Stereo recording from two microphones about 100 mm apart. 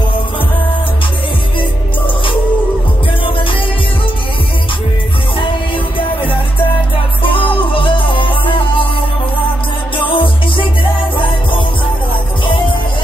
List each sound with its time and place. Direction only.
7.2 s music: 60° left (ahead or behind)
9.9 s music: 60° left (ahead or behind)